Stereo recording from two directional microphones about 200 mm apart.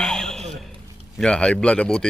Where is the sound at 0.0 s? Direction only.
5° left (ahead or behind).